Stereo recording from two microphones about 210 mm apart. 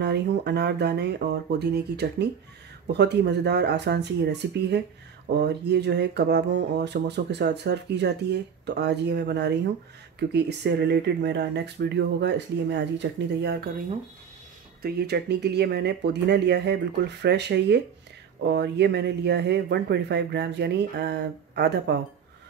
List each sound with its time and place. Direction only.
0.0 s speech: 55° right (ahead or behind)
14.8 s speech: 50° right (ahead or behind)